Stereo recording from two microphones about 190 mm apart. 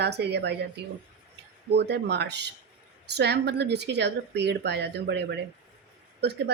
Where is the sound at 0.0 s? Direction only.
60° right (ahead or behind).